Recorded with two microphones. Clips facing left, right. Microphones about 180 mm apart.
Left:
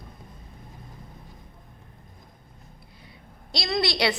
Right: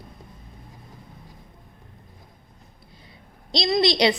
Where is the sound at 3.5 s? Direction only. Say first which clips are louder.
Right 6 dB; 20° right (ahead or behind).